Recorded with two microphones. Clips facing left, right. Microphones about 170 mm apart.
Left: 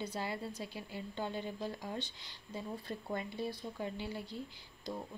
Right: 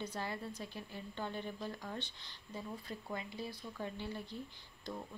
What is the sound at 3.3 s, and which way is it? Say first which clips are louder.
Speech: left 5 dB; 25° left (ahead or behind).